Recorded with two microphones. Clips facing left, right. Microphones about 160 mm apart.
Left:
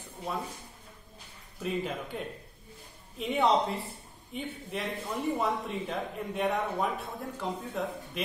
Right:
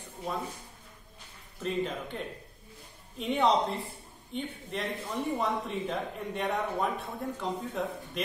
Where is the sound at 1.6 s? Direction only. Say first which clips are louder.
Right 1 dB; 5° left (ahead or behind).